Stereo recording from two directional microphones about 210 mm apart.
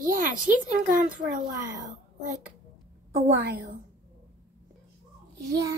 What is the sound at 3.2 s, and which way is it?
Speech, 40° right (ahead or behind).